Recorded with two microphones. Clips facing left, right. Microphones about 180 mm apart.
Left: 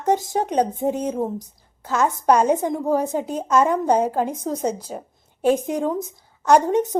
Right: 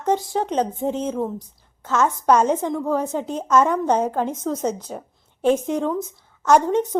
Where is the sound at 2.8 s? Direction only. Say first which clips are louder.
Left 2 dB; 40° left (ahead or behind).